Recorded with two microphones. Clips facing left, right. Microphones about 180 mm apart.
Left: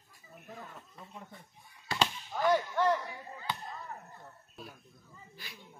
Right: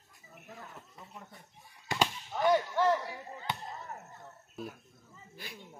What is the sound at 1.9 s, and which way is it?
Chop, 20° right (ahead or behind).